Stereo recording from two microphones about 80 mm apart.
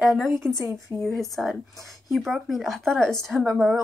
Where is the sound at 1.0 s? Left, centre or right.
Centre.